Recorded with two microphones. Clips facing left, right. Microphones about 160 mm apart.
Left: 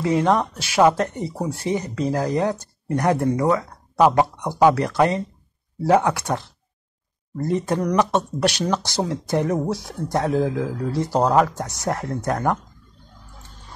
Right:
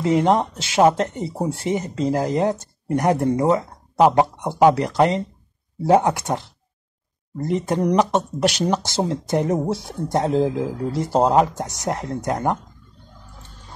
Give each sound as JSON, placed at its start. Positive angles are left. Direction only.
{"t": 0.0, "sound": "speech", "side_deg": -20}